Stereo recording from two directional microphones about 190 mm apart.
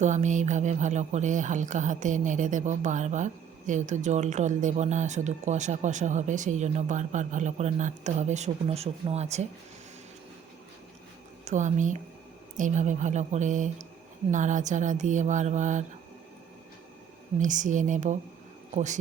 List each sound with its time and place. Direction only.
0.0 s speech: 40° right (ahead or behind)
11.4 s speech: 40° right (ahead or behind)
17.4 s speech: 40° right (ahead or behind)